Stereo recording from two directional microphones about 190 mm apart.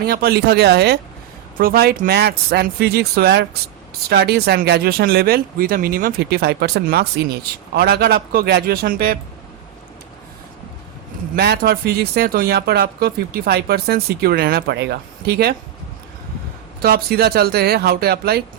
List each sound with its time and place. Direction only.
0.0 s speech: 55° right (ahead or behind)
11.3 s speech: 55° right (ahead or behind)
16.8 s speech: 55° right (ahead or behind)